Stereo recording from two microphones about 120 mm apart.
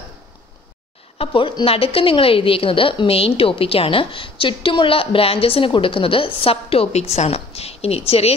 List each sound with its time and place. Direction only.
1.1 s a woman's voice: 50° left (ahead or behind)